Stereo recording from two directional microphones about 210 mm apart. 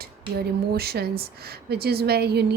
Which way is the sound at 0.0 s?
50° right (ahead or behind).